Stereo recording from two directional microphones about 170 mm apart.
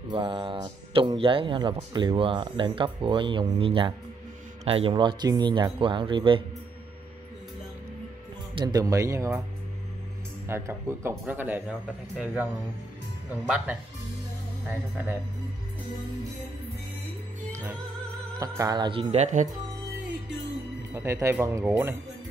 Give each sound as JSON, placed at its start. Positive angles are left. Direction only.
{"t": 0.1, "sound": "speech", "side_deg": -30}
{"t": 8.5, "sound": "speech", "side_deg": -20}
{"t": 10.5, "sound": "speech", "side_deg": -15}
{"t": 13.3, "sound": "speech", "side_deg": -10}
{"t": 18.6, "sound": "speech", "side_deg": -25}
{"t": 20.9, "sound": "speech", "side_deg": -15}